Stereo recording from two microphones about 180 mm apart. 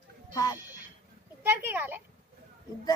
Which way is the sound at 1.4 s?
10° right (ahead or behind).